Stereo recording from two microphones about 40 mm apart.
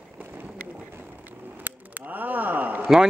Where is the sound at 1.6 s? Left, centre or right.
Right.